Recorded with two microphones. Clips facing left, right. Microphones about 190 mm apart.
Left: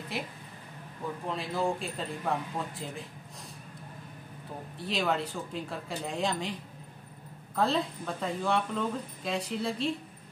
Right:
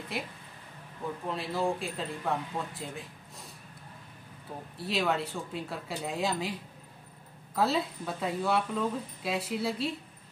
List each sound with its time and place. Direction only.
1.3 s speech: centre (ahead or behind)
4.7 s speech: centre (ahead or behind)
7.5 s speech: 5° right (ahead or behind)